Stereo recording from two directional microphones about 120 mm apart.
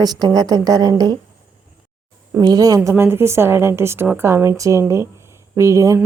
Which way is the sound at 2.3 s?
30° right (ahead or behind).